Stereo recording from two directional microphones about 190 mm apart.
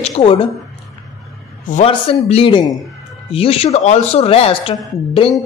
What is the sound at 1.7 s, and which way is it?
A man's voice, 35° left (ahead or behind).